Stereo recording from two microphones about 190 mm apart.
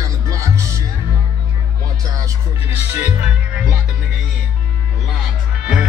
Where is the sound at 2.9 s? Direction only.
5° right (ahead or behind).